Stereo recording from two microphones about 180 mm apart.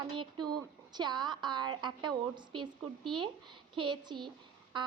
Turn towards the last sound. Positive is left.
turn(degrees=-25)  # may be behind; listen again after turning